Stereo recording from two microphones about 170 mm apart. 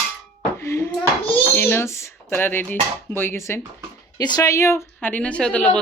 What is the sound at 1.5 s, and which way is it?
A woman's voice, 10° left (ahead or behind).